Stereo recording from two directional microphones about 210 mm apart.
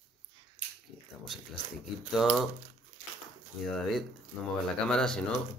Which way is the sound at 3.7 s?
Centre (ahead or behind).